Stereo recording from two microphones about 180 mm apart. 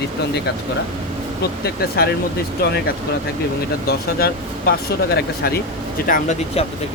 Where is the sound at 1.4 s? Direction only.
60° left (ahead or behind).